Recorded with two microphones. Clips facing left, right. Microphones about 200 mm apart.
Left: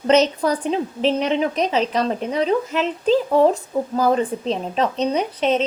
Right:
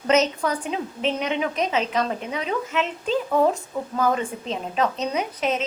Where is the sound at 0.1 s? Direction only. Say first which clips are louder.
Left 4 dB; 35° left (ahead or behind).